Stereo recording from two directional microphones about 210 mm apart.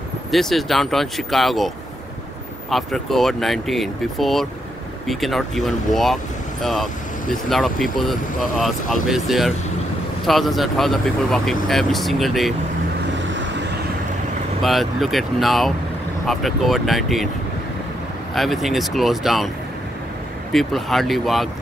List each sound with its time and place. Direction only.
0.3 s speech: centre (ahead or behind)
2.7 s speech: centre (ahead or behind)
13.3 s vehicle: 60° right (ahead or behind)
14.6 s speech: centre (ahead or behind)
18.3 s speech: centre (ahead or behind)
20.5 s speech: centre (ahead or behind)